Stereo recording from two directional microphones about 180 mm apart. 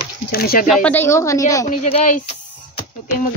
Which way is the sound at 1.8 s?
40° left (ahead or behind).